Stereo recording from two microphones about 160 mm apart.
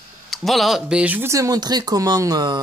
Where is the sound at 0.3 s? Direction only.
Centre (ahead or behind).